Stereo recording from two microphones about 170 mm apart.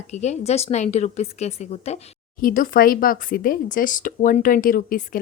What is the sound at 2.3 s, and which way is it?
Speech, 55° left (ahead or behind).